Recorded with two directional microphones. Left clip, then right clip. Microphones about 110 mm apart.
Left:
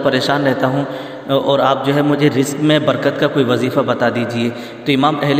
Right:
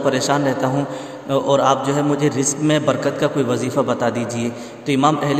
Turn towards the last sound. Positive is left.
turn(degrees=15)  # may be behind; listen again after turning